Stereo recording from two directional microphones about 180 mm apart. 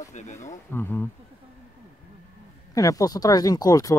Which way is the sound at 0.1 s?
40° left (ahead or behind).